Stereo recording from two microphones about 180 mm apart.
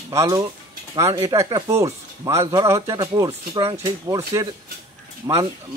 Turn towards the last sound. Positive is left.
turn(degrees=-25)  # may be behind; listen again after turning